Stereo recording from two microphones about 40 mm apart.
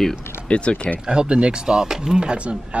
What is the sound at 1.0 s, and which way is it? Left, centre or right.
Speech, right.